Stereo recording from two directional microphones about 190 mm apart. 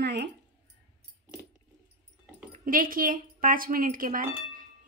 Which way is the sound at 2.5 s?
45° right (ahead or behind).